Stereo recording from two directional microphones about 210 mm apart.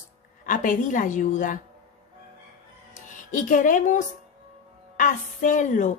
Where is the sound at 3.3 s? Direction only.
40° left (ahead or behind).